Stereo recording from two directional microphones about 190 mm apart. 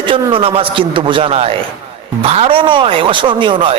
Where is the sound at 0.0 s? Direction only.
25° right (ahead or behind).